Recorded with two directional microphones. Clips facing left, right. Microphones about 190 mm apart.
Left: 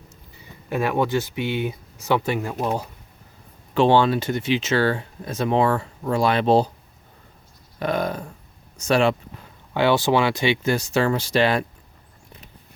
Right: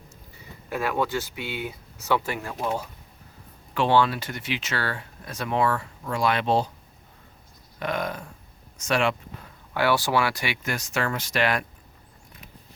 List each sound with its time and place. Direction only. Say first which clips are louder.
0.7 s speech: left 4 dB; 20° left (ahead or behind)
3.8 s speech: left 5 dB; 25° left (ahead or behind)
7.8 s speech: left 5 dB; 35° left (ahead or behind)
9.7 s speech: left 4 dB; 20° left (ahead or behind)